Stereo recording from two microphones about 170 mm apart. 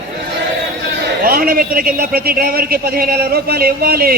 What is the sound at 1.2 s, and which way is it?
A man's voice, 60° right (ahead or behind).